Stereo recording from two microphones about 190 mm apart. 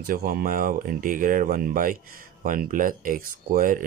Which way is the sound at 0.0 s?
50° right (ahead or behind).